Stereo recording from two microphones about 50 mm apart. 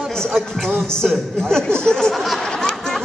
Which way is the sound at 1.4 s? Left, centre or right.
Centre.